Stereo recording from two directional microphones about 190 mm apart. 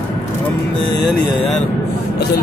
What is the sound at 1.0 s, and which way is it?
Speech, centre (ahead or behind).